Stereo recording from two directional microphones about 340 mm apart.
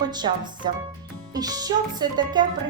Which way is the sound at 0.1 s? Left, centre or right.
Centre.